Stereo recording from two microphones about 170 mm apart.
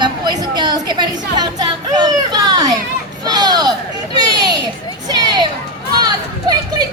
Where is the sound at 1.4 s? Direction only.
25° right (ahead or behind).